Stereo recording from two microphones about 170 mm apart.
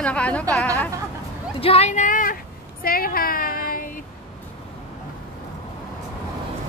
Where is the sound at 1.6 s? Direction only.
35° left (ahead or behind); by 3.9 s 55° left (ahead or behind).